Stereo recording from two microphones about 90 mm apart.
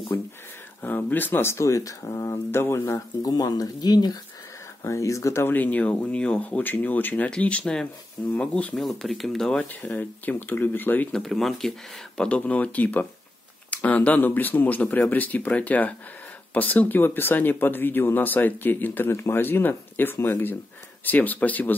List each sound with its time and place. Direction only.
0.1 s speech: 25° left (ahead or behind)
3.2 s speech: 45° left (ahead or behind)
4.8 s speech: 35° left (ahead or behind); by 8.7 s 15° left (ahead or behind)
8.7 s speech: centre (ahead or behind); by 11.1 s 20° left (ahead or behind)
11.1 s speech: 5° left (ahead or behind)
12.2 s speech: 15° left (ahead or behind)